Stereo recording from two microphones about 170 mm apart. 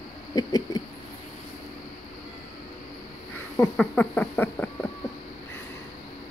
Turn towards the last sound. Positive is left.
turn(degrees=10)  # may be behind; listen again after turning